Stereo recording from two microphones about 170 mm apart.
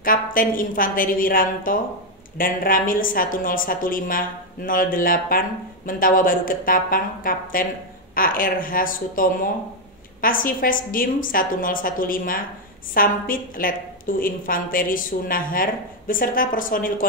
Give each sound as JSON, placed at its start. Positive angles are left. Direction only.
{"t": 0.0, "sound": "a woman's voice", "side_deg": 55}